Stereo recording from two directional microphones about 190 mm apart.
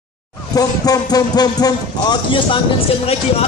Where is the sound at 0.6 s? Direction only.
20° left (ahead or behind).